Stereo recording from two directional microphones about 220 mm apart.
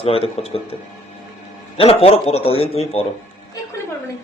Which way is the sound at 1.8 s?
25° left (ahead or behind).